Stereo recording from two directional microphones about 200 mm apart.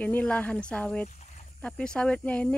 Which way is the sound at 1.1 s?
35° left (ahead or behind).